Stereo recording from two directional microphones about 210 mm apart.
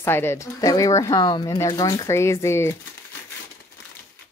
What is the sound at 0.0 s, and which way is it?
Speech, 10° left (ahead or behind).